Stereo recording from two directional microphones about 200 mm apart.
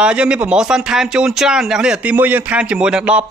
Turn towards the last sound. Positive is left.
turn(degrees=-5)  # may be behind; listen again after turning